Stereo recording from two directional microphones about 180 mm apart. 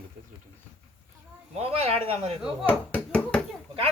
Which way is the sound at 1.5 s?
35° right (ahead or behind).